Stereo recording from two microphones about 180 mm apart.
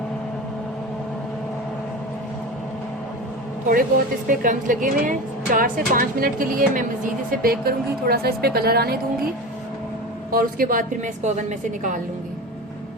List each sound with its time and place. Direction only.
4.3 s a woman's voice: 45° right (ahead or behind)
10.3 s a woman's voice: 50° right (ahead or behind)